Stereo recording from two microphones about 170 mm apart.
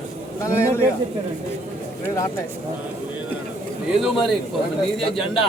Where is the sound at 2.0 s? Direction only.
15° left (ahead or behind).